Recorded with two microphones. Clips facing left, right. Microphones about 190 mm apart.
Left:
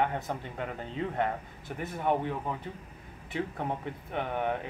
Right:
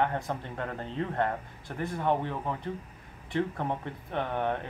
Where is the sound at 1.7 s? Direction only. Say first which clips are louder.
Right 2 dB; 10° left (ahead or behind).